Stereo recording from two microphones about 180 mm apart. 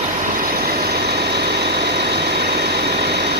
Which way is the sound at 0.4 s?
55° right (ahead or behind).